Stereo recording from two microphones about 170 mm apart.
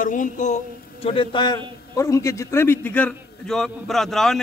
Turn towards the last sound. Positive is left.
turn(degrees=0)  # may be behind; listen again after turning